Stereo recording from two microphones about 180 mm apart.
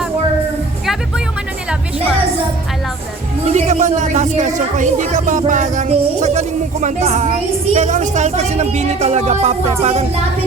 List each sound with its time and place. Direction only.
3.5 s a woman's voice: 40° right (ahead or behind)